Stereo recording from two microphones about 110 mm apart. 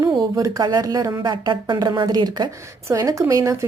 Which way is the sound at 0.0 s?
35° right (ahead or behind).